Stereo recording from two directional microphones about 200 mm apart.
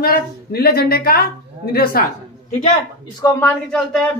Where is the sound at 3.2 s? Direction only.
15° left (ahead or behind).